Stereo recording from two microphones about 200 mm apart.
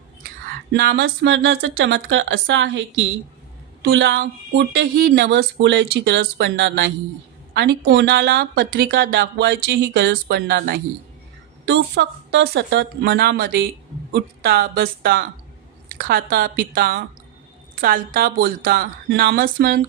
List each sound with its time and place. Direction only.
0.7 s speech: 55° right (ahead or behind)
5.5 s a woman's voice: 65° right (ahead or behind)
11.6 s a woman's voice: 60° right (ahead or behind)